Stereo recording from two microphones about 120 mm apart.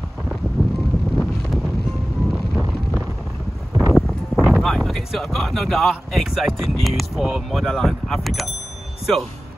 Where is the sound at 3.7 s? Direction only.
25° right (ahead or behind).